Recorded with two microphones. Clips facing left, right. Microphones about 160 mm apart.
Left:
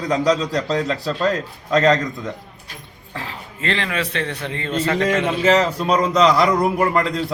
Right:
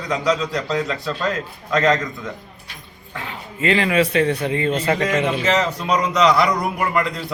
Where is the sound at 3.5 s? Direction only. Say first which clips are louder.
Right 6 dB; 10° right (ahead or behind).